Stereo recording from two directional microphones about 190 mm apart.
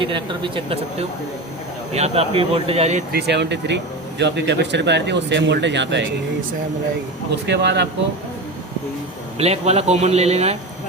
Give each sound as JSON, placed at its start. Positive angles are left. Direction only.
{"t": 0.0, "sound": "a man's voice", "side_deg": -25}
{"t": 3.1, "sound": "speech", "side_deg": -60}
{"t": 7.4, "sound": "speech", "side_deg": -65}
{"t": 9.4, "sound": "a man's voice", "side_deg": -35}